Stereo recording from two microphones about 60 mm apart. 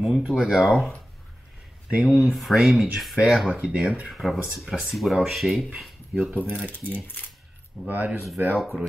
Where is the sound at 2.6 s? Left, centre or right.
Centre.